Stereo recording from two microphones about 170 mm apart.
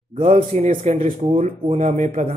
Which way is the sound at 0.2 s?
40° right (ahead or behind).